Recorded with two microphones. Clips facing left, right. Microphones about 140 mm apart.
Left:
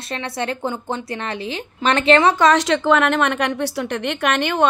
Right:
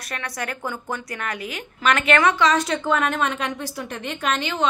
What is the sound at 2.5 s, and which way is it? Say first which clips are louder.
A woman's voice: left 5 dB; 90° left.